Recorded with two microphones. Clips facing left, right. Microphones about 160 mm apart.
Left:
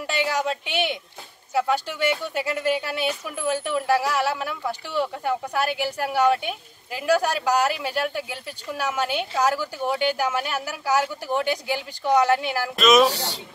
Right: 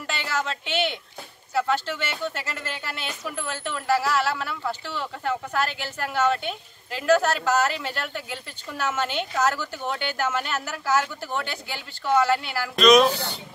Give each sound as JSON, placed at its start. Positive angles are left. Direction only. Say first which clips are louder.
{"t": 0.0, "sound": "speech", "louder": "left 4 dB", "side_deg": 15}
{"t": 12.7, "sound": "speech", "louder": "right 1 dB", "side_deg": 5}
{"t": 13.1, "sound": "speech", "louder": "even", "side_deg": 80}